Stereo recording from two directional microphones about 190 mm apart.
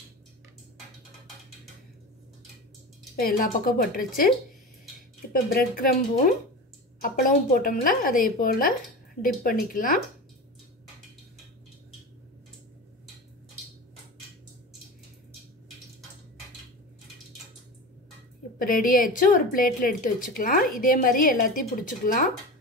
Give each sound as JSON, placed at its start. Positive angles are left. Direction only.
{"t": 3.2, "sound": "a woman's voice", "side_deg": 50}
{"t": 5.3, "sound": "a woman's voice", "side_deg": 50}
{"t": 18.6, "sound": "a woman's voice", "side_deg": 45}